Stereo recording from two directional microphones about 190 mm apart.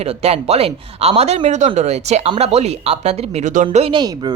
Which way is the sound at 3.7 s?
30° right (ahead or behind).